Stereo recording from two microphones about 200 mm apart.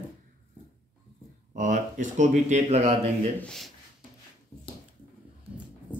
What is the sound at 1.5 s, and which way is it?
Speech, 40° right (ahead or behind).